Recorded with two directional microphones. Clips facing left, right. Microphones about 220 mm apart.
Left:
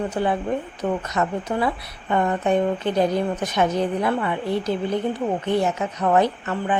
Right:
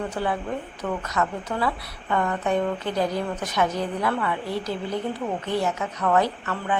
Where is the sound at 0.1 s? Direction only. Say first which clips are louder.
Left 4 dB; 20° left (ahead or behind).